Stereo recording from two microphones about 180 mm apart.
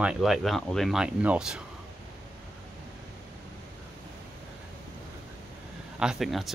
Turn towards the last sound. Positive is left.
turn(degrees=0)  # may be behind; listen again after turning